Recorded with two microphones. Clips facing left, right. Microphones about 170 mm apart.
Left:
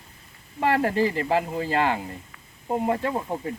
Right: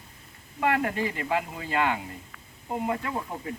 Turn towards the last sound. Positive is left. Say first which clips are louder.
# left 5 dB
turn(degrees=35)  # may be behind; listen again after turning